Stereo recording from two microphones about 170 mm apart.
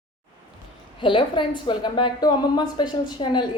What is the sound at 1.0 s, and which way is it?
A woman's voice, 30° left (ahead or behind).